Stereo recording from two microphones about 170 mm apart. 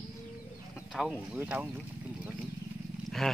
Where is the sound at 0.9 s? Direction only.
Centre (ahead or behind).